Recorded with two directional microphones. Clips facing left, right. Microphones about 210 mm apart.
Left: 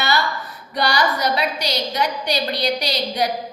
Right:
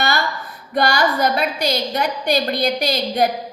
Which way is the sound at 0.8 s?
50° right (ahead or behind).